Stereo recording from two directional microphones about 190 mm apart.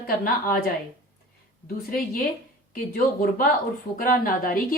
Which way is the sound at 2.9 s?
50° left (ahead or behind).